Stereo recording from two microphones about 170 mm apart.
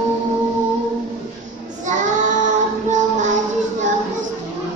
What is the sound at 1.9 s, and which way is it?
Child singing, 45° right (ahead or behind).